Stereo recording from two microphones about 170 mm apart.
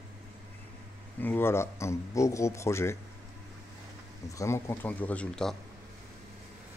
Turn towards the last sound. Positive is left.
turn(degrees=5)  # may be behind; listen again after turning